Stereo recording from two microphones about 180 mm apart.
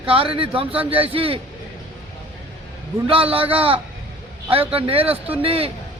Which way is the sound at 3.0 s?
30° right (ahead or behind).